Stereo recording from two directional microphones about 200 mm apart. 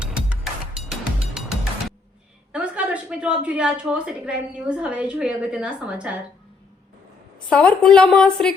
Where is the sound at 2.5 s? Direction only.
5° right (ahead or behind).